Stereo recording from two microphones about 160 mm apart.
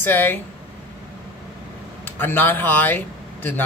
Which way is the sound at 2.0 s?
10° left (ahead or behind).